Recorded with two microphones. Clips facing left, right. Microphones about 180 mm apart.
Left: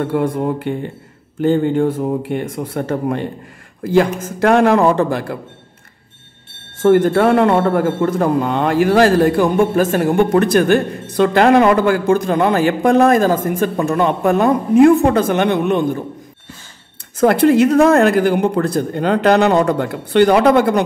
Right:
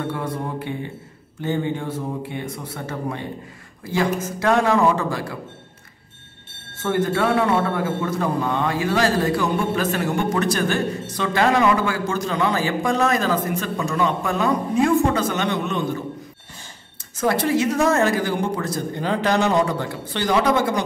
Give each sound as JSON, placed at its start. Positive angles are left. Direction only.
{"t": 0.0, "sound": "a man's voice", "side_deg": 55}
{"t": 7.1, "sound": "a man's voice", "side_deg": 50}
{"t": 8.1, "sound": "a man's voice", "side_deg": 65}
{"t": 17.2, "sound": "a man's voice", "side_deg": 60}